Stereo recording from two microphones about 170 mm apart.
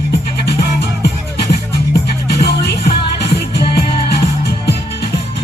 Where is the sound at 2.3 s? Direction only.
75° left (ahead or behind).